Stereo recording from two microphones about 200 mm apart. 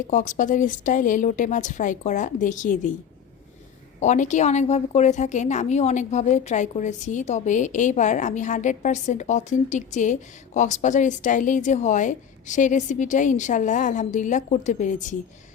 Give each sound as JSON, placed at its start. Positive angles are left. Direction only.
{"t": 0.1, "sound": "a woman's voice", "side_deg": 40}
{"t": 4.0, "sound": "a woman's voice", "side_deg": 35}